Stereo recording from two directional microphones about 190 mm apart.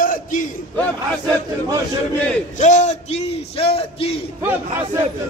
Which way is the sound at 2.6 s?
40° left (ahead or behind).